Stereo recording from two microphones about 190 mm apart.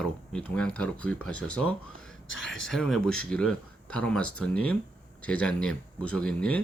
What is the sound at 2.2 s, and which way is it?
Speech, 90° left.